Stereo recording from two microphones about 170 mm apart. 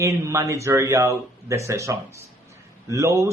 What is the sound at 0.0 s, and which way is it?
Speech, 15° right (ahead or behind).